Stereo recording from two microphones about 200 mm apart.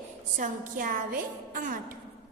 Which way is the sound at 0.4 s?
45° right (ahead or behind).